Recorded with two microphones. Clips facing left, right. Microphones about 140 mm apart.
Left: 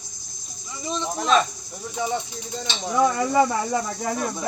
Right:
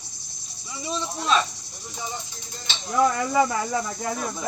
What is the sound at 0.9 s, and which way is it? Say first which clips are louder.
Speech: left 3 dB; 5° right (ahead or behind).